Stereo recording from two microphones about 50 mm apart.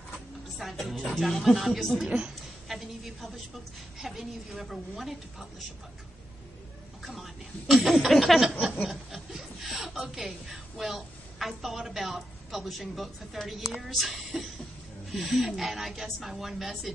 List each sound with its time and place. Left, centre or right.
0.6 s speech: centre
0.9 s speech: centre
1.4 s speech: centre
2.0 s a woman's voice: centre
2.7 s a sound: centre
4.0 s speech: centre
7.0 s speech: centre